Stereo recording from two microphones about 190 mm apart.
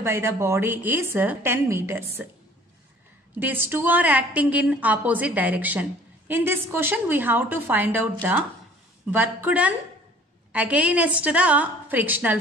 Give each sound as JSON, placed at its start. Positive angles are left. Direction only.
{"t": 0.0, "sound": "a woman's voice", "side_deg": -15}
{"t": 3.3, "sound": "a woman's voice", "side_deg": -10}